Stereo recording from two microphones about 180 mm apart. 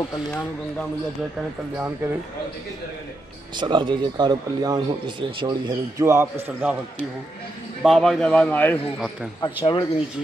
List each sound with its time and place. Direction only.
0.3 s speech: 5° left (ahead or behind)
3.5 s a man's voice: 25° right (ahead or behind); by 6.8 s 10° right (ahead or behind)
7.8 s a man's voice: centre (ahead or behind)
9.4 s speech: 25° left (ahead or behind)